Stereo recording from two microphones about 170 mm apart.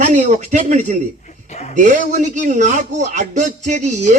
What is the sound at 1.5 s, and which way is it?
Speech, 40° left (ahead or behind).